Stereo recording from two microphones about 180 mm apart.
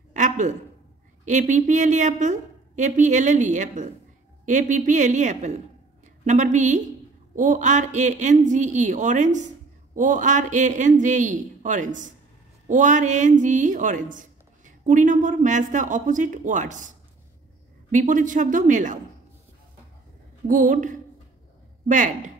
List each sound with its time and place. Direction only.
0.1 s a sound: 45° right (ahead or behind)
1.2 s a woman's voice: 45° right (ahead or behind)
17.9 s a woman's voice: 45° right (ahead or behind)
20.4 s a woman's voice: 45° right (ahead or behind)